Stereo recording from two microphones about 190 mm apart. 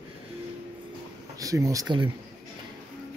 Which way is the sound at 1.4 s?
15° right (ahead or behind).